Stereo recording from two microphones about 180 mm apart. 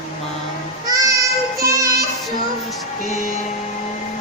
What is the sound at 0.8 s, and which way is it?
Music, 20° right (ahead or behind).